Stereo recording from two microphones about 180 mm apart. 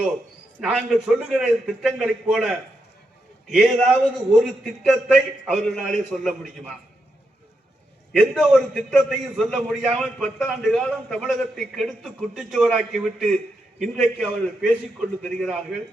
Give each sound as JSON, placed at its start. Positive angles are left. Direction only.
{"t": 0.7, "sound": "a man's voice", "side_deg": 0}
{"t": 3.5, "sound": "a man's voice", "side_deg": 0}
{"t": 8.3, "sound": "a man's voice", "side_deg": 0}